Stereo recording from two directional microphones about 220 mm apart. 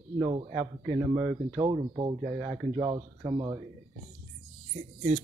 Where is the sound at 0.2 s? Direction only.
20° right (ahead or behind).